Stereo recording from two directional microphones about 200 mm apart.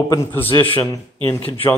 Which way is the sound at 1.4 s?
30° left (ahead or behind).